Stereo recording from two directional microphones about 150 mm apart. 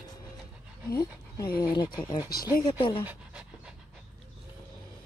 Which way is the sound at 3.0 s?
5° right (ahead or behind).